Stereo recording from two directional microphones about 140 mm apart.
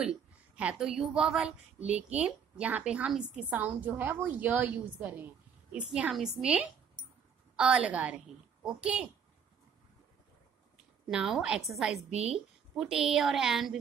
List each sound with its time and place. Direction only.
0.0 s a woman's voice: 5° right (ahead or behind)
11.1 s a woman's voice: 5° right (ahead or behind)
12.1 s a woman's voice: 45° right (ahead or behind)
12.7 s a woman's voice: centre (ahead or behind)